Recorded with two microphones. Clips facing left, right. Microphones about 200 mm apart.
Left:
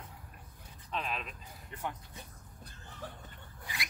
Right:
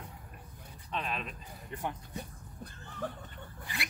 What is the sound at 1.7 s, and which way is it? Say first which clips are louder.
Speech: right 2 dB; 20° right (ahead or behind).